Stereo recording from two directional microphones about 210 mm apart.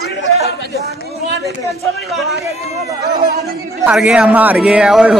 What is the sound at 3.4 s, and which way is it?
Speech, centre (ahead or behind).